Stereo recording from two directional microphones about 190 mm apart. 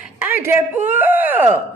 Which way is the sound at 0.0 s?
10° right (ahead or behind).